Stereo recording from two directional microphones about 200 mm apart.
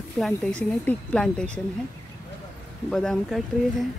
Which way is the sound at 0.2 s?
5° left (ahead or behind).